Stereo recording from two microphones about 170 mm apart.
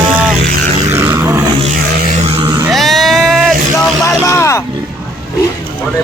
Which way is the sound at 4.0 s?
15° left (ahead or behind).